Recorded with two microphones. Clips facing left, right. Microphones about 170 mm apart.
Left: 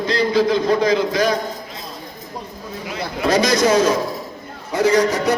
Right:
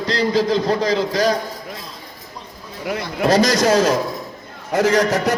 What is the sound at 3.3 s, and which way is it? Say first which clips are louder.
Speech: even; 40° right (ahead or behind).